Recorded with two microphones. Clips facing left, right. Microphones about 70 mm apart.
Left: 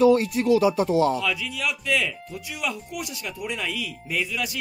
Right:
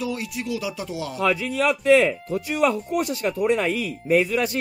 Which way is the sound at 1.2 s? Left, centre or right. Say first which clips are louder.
Right 6 dB; right.